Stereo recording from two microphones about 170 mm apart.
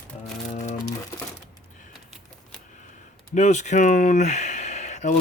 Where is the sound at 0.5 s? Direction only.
45° left (ahead or behind).